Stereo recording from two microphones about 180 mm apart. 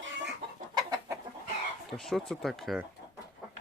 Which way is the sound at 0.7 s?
20° right (ahead or behind).